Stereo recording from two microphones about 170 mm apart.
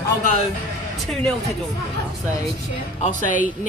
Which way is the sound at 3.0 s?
50° left (ahead or behind).